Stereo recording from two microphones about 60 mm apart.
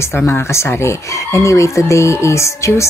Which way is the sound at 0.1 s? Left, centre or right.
Left.